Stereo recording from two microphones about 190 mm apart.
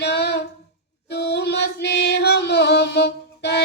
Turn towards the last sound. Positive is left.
turn(degrees=60)  # may be behind; listen again after turning